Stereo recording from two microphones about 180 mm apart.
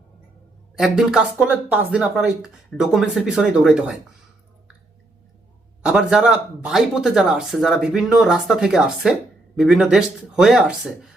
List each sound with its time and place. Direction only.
0.8 s speech: 5° right (ahead or behind)
5.8 s speech: 5° right (ahead or behind)